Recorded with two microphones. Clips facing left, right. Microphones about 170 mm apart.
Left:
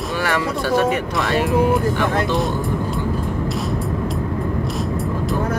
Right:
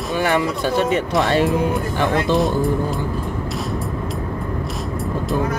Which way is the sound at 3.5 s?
Centre (ahead or behind).